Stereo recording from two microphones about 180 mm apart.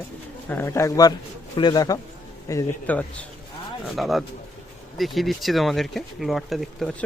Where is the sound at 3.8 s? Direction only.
Centre (ahead or behind).